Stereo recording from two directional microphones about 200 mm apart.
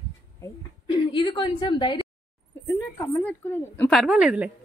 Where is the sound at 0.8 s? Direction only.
25° left (ahead or behind).